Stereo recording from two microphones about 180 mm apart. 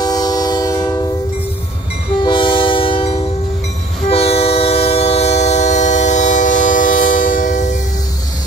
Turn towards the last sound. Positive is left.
turn(degrees=45)  # may be behind; listen again after turning